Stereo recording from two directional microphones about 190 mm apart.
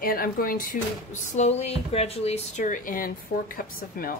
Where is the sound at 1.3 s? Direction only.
35° left (ahead or behind).